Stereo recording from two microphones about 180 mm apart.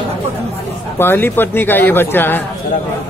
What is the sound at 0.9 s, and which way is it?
A man's voice, 10° left (ahead or behind).